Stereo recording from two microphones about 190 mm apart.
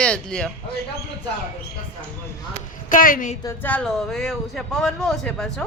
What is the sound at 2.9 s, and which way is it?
Speech, 45° left (ahead or behind).